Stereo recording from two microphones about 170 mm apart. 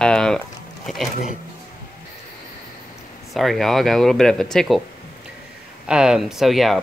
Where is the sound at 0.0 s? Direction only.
5° left (ahead or behind).